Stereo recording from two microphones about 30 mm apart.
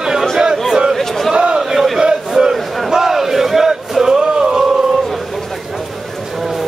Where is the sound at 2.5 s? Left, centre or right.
Centre.